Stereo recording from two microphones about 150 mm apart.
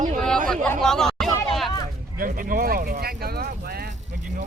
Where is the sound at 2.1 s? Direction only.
70° right (ahead or behind); by 3.8 s 90° right.